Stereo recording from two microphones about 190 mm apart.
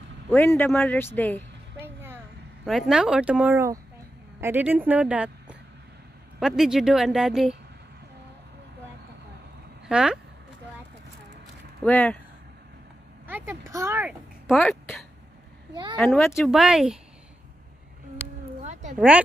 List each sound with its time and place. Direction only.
0.7 s speech: 5° left (ahead or behind)
1.8 s vehicle: 10° right (ahead or behind)
2.9 s speech: 5° right (ahead or behind)
9.8 s speech: 5° right (ahead or behind)
11.8 s speech: 10° left (ahead or behind)
13.3 s a sound: 15° right (ahead or behind)
14.6 s speech: 5° left (ahead or behind)
15.7 s a child's voice: 25° right (ahead or behind)
16.0 s speech: centre (ahead or behind)
18.6 s a sound: 35° right (ahead or behind)
18.9 s speech: 5° right (ahead or behind)